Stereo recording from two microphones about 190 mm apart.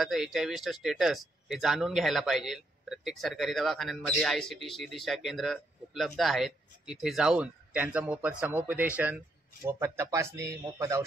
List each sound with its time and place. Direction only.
0.0 s speech: centre (ahead or behind)